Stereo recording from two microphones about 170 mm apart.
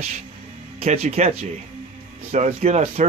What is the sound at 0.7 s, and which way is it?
Speech, 40° right (ahead or behind).